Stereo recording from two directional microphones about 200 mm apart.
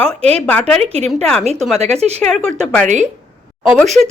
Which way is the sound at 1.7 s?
30° right (ahead or behind).